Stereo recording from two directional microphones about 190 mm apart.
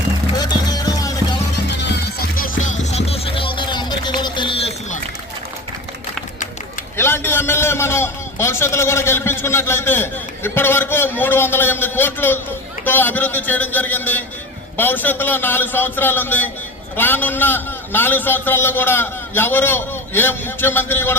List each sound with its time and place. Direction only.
0.3 s music: 20° left (ahead or behind)
1.7 s music: 60° left (ahead or behind); by 4.9 s 30° left (ahead or behind)
6.9 s a man's voice: 10° left (ahead or behind)